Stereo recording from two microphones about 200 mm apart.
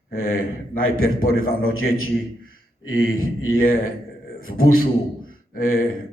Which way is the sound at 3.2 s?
45° left (ahead or behind).